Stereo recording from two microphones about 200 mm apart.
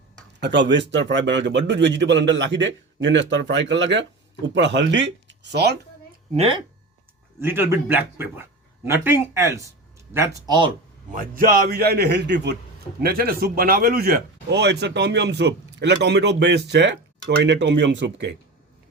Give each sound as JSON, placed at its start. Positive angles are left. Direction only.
{"t": 0.3, "sound": "speech", "side_deg": -60}
{"t": 6.3, "sound": "speech", "side_deg": -30}
{"t": 7.3, "sound": "speech", "side_deg": -10}
{"t": 11.1, "sound": "a man's voice", "side_deg": -45}